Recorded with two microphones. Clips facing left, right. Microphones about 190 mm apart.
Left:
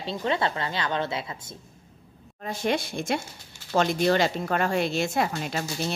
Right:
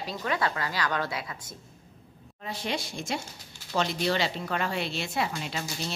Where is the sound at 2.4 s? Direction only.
50° left (ahead or behind).